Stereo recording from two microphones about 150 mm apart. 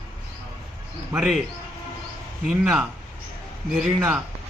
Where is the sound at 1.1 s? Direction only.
5° right (ahead or behind).